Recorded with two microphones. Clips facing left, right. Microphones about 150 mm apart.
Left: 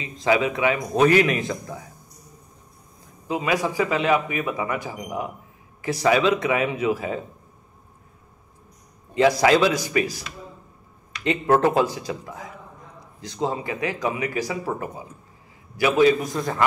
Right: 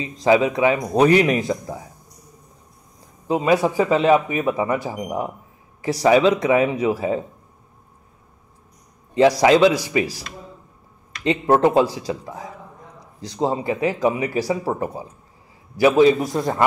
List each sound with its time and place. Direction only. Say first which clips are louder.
0.0 s a man's voice: right 4 dB; 30° right (ahead or behind)
3.3 s a man's voice: right 6 dB; 35° right (ahead or behind)
5.8 s a sound: right 3 dB; 35° right (ahead or behind)
6.0 s a man's voice: right 4 dB; 25° right (ahead or behind)
9.1 s a man's voice: right 3 dB; 30° right (ahead or behind)
11.5 s a man's voice: right 3 dB; 25° right (ahead or behind)